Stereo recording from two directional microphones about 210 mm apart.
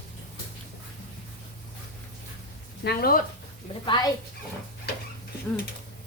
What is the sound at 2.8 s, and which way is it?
Speech, 45° left (ahead or behind).